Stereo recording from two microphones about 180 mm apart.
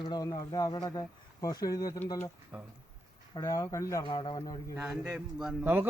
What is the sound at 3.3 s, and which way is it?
Speech, 20° left (ahead or behind).